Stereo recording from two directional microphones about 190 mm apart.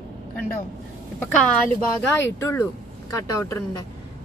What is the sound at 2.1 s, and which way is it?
Speech, 15° left (ahead or behind).